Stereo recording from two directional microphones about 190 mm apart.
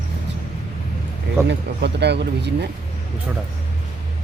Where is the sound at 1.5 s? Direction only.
60° right (ahead or behind).